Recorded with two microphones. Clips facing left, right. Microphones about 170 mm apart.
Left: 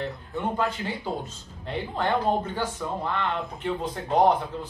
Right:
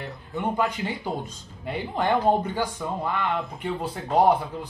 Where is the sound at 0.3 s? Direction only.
15° right (ahead or behind).